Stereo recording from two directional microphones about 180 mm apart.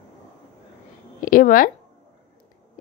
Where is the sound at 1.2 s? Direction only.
50° left (ahead or behind).